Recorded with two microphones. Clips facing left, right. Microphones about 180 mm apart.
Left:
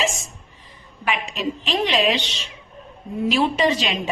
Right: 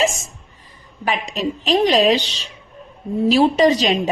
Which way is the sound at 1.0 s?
40° right (ahead or behind).